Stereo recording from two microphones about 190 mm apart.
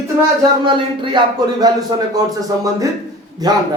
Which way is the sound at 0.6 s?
25° right (ahead or behind).